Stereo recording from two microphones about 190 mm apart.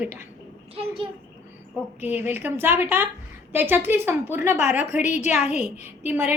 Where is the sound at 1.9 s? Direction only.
10° right (ahead or behind).